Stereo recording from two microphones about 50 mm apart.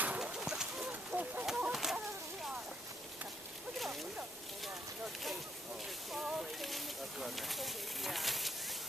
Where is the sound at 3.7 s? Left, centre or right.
Centre.